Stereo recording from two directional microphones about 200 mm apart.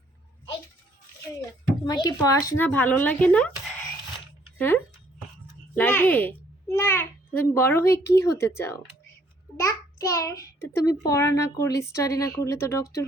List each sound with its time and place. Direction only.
1.4 s a child's voice: 20° left (ahead or behind)